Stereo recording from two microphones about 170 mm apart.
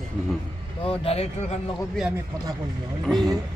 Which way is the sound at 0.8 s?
35° left (ahead or behind).